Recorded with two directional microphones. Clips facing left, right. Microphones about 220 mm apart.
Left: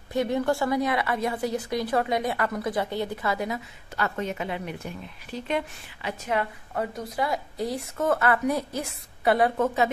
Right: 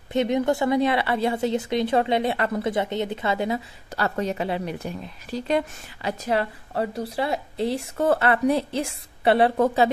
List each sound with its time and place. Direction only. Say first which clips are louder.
0.1 s a woman's voice: right 3 dB; 20° right (ahead or behind)